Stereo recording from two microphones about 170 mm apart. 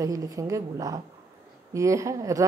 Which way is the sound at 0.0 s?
20° right (ahead or behind).